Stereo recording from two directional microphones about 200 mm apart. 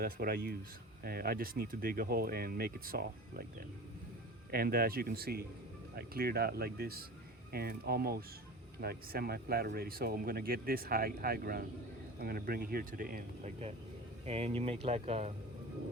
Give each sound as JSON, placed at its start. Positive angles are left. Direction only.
{"t": 0.0, "sound": "speech", "side_deg": -50}
{"t": 4.5, "sound": "speech", "side_deg": -45}